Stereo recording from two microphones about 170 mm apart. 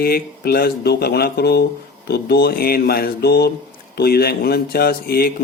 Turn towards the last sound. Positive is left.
turn(degrees=65)  # may be behind; listen again after turning